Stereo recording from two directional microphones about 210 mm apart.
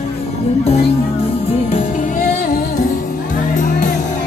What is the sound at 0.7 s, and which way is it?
Music, 30° left (ahead or behind).